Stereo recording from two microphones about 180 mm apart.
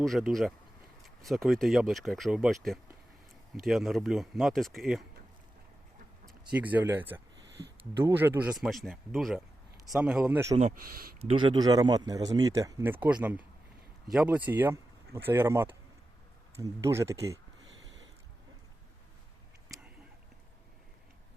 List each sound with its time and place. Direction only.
0.0 s speech: centre (ahead or behind)
6.6 s speech: 10° right (ahead or behind)
10.8 s speech: 55° right (ahead or behind)
11.2 s speech: 30° right (ahead or behind)